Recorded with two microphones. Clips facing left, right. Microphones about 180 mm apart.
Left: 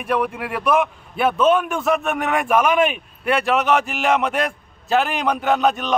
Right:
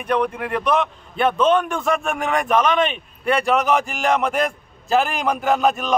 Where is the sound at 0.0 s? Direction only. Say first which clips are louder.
Right 1 dB; 5° left (ahead or behind).